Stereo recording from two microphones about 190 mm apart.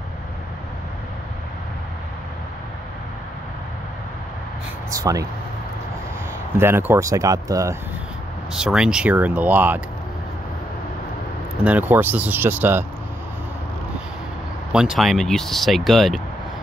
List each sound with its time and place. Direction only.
4.9 s speech: 20° right (ahead or behind)
6.6 s speech: 10° right (ahead or behind)
8.5 s speech: 5° right (ahead or behind)
11.6 s speech: 10° right (ahead or behind)
14.7 s speech: 5° right (ahead or behind)